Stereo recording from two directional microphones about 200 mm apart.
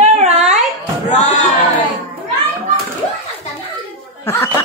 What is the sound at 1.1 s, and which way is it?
Speech, 35° left (ahead or behind).